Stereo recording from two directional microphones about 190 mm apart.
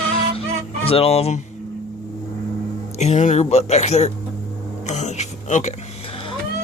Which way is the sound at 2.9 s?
35° left (ahead or behind).